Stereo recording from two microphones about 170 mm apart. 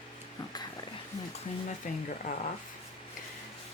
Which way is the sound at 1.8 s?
50° left (ahead or behind).